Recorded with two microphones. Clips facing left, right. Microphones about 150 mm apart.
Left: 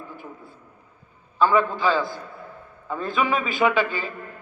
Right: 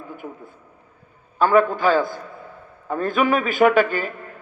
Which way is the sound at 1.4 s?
50° right (ahead or behind).